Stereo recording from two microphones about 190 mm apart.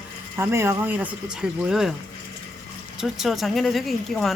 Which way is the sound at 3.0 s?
Centre (ahead or behind).